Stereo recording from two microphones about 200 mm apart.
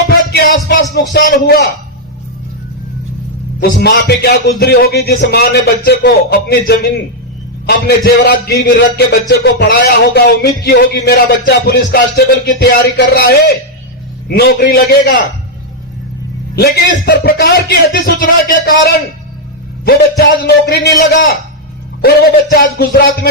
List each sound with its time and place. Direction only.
0.3 s music: 50° left (ahead or behind)
0.9 s a man's voice: 45° left (ahead or behind)
3.6 s a man's voice: 55° left (ahead or behind)
16.6 s a man's voice: 50° left (ahead or behind)
19.8 s a man's voice: 50° left (ahead or behind)
22.0 s a man's voice: 55° left (ahead or behind)